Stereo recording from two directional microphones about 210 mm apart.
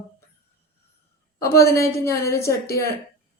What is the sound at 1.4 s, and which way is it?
A woman's voice, 15° left (ahead or behind).